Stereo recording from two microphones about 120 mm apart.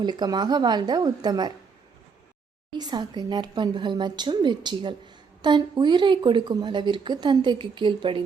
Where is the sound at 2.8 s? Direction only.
35° right (ahead or behind).